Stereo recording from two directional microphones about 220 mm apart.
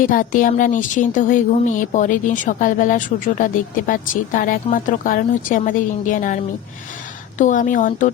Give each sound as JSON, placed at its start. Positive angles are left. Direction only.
{"t": 0.0, "sound": "a woman's voice", "side_deg": 40}